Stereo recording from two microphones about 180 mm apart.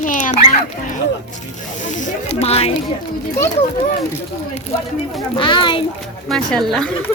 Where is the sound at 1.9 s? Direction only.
40° left (ahead or behind).